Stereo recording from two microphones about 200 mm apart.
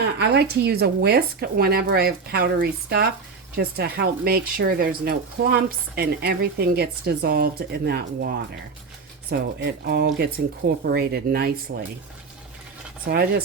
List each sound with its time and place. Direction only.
0.0 s speech: 55° right (ahead or behind)
9.3 s speech: 55° right (ahead or behind)
13.1 s speech: 55° right (ahead or behind)